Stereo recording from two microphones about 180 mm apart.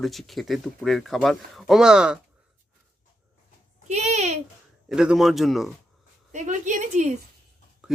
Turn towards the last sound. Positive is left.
turn(degrees=-5)  # may be behind; listen again after turning